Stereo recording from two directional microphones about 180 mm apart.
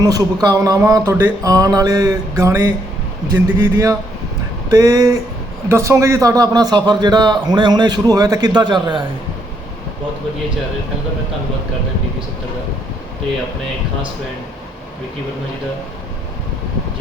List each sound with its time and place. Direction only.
0.0 s a man's voice: 20° right (ahead or behind)